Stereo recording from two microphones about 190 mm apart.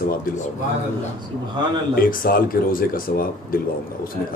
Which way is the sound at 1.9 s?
50° left (ahead or behind).